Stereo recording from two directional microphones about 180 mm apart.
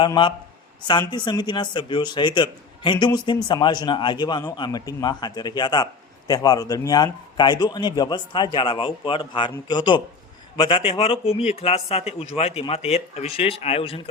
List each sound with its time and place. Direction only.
0.0 s a man's voice: 25° left (ahead or behind)